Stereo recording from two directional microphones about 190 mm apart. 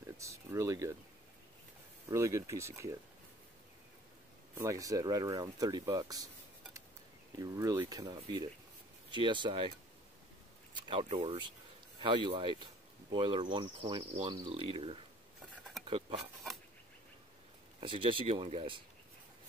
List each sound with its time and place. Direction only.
0.2 s a sound: 15° right (ahead or behind)
2.0 s speech: 15° right (ahead or behind)
4.6 s speech: 15° right (ahead or behind)
7.3 s speech: 20° right (ahead or behind)
10.7 s speech: 25° right (ahead or behind)
17.7 s speech: 25° right (ahead or behind)